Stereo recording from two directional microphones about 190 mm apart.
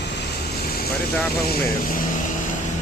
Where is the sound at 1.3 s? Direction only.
50° left (ahead or behind).